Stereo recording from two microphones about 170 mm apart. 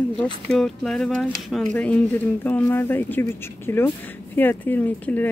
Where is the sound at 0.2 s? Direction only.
Centre (ahead or behind).